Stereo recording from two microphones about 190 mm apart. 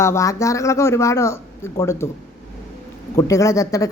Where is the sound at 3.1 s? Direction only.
15° left (ahead or behind).